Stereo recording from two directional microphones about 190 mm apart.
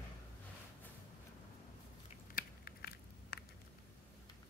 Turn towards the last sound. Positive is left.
turn(degrees=55)  # may be behind; listen again after turning